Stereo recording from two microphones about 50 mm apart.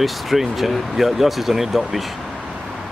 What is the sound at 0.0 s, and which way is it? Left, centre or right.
Speech, centre.